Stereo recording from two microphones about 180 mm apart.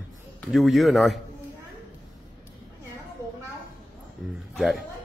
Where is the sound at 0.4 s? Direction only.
Centre (ahead or behind).